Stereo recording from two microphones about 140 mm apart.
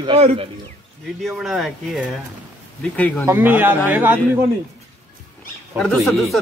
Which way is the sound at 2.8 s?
10° left (ahead or behind).